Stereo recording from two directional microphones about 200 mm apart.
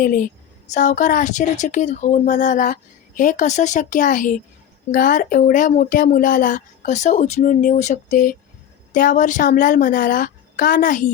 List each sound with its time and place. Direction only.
0.0 s a woman's voice: 45° left (ahead or behind)